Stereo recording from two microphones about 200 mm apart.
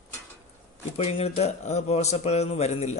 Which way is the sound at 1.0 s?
30° left (ahead or behind).